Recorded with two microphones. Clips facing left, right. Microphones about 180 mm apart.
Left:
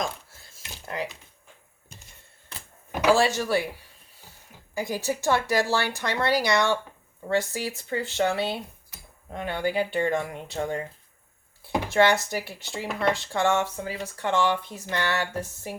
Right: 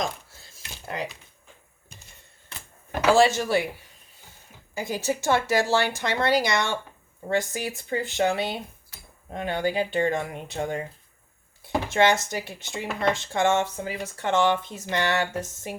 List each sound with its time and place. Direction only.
0.0 s a sound: 25° right (ahead or behind)
2.9 s speech: 10° left (ahead or behind)
3.4 s speech: 15° right (ahead or behind)
4.8 s speech: 15° right (ahead or behind)